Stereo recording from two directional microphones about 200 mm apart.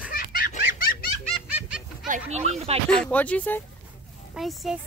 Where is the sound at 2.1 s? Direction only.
35° right (ahead or behind).